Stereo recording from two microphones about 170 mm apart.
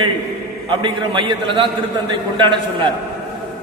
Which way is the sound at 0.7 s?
30° right (ahead or behind).